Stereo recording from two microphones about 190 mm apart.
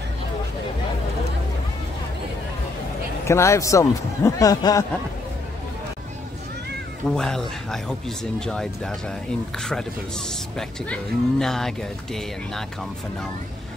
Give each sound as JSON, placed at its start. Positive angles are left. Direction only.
{"t": 3.3, "sound": "speech", "side_deg": 15}
{"t": 7.1, "sound": "speech", "side_deg": 5}
{"t": 10.9, "sound": "speech", "side_deg": 0}